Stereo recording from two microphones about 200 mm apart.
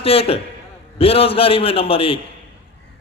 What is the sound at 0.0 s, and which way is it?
A man's voice, 30° left (ahead or behind).